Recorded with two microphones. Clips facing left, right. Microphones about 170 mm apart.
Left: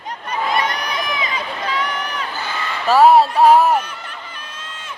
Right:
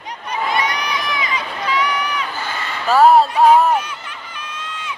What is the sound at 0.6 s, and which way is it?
Crowd, 50° left (ahead or behind).